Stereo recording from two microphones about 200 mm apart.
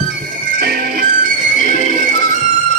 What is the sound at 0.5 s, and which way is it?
Music, 45° right (ahead or behind).